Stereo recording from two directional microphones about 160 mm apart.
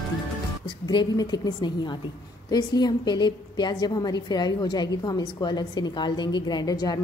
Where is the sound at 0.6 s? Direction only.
30° left (ahead or behind).